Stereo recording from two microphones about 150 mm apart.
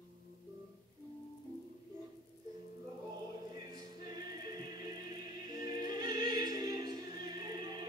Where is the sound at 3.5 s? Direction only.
25° right (ahead or behind).